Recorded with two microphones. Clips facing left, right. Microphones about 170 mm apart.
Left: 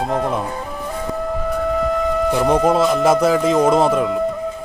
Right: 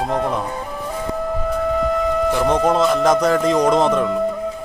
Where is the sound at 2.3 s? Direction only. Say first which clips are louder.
Left 3 dB; 5° left (ahead or behind).